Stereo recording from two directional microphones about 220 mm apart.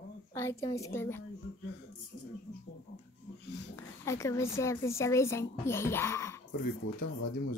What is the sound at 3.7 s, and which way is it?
A woman's voice, 15° left (ahead or behind).